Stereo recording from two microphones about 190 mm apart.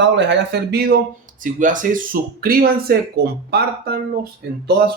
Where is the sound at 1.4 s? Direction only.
45° right (ahead or behind).